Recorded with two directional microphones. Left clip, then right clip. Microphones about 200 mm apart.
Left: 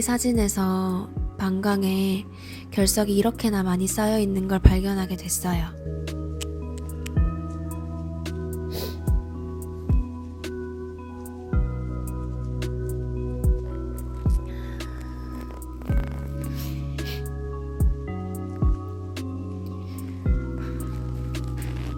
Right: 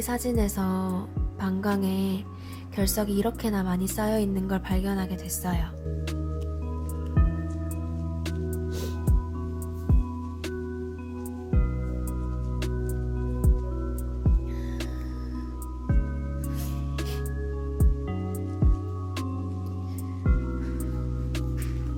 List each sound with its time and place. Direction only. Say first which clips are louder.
0.0 s a woman's voice: left 4 dB; 20° left (ahead or behind)
8.2 s music: left 1 dB; 5° left (ahead or behind)
12.5 s music: left 2 dB; centre (ahead or behind)
17.7 s music: even; centre (ahead or behind)
20.2 s music: even; centre (ahead or behind)